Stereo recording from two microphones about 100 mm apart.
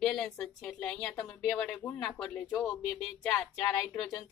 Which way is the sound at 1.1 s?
20° left (ahead or behind).